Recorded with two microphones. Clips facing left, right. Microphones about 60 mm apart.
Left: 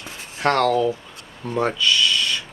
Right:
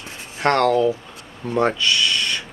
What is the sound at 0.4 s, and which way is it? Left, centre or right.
Speech, centre.